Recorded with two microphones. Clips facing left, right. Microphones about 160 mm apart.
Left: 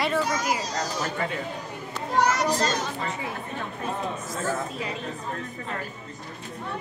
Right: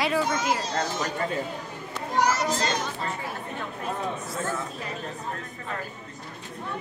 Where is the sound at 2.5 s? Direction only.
40° left (ahead or behind).